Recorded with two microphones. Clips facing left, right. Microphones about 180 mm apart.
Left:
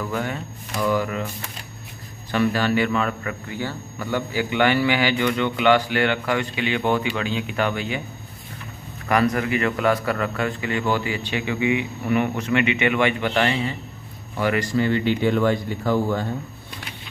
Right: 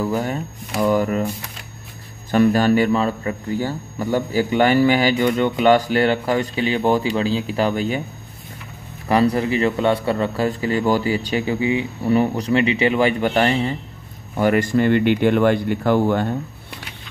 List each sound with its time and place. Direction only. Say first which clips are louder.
0.1 s a man's voice: right 4 dB; 35° right (ahead or behind)
2.3 s a man's voice: right 5 dB; 45° right (ahead or behind)
9.1 s a man's voice: right 3 dB; 30° right (ahead or behind); by 16.3 s 65° right (ahead or behind)